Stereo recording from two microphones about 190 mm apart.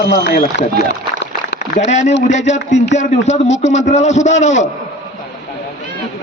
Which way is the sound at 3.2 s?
35° left (ahead or behind).